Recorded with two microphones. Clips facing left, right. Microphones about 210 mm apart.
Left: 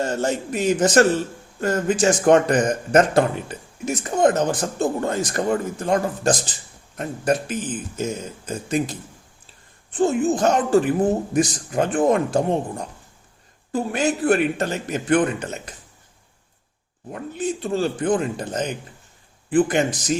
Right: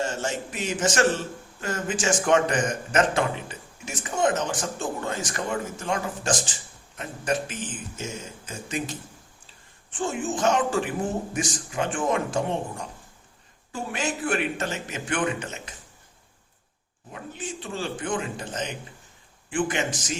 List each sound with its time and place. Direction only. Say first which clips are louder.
0.2 s a man's voice: left 7 dB; 40° left (ahead or behind)
17.1 s a man's voice: left 10 dB; 40° left (ahead or behind)